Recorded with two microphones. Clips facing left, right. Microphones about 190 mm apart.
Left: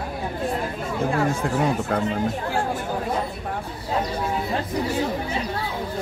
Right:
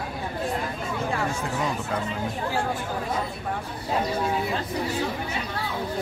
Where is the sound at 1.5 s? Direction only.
55° left (ahead or behind).